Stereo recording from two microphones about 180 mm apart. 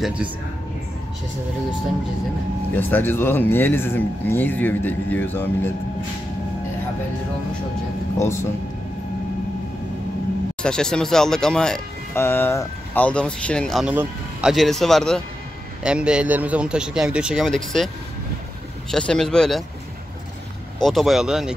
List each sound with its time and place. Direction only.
0.0 s a man's voice: 5° right (ahead or behind)
2.7 s speech: 10° left (ahead or behind)
8.2 s speech: 15° left (ahead or behind)
10.6 s speech: 5° left (ahead or behind)
18.9 s speech: 5° left (ahead or behind)
20.8 s speech: centre (ahead or behind)